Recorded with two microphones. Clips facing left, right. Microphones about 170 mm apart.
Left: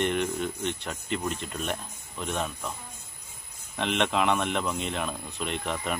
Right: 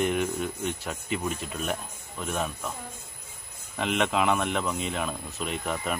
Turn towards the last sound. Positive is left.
turn(degrees=-5)  # may be behind; listen again after turning